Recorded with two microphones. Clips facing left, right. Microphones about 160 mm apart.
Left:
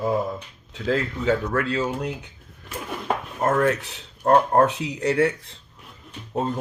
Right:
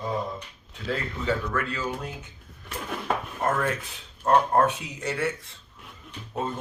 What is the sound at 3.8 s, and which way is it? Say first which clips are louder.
Speech: left 3 dB; 75° left (ahead or behind).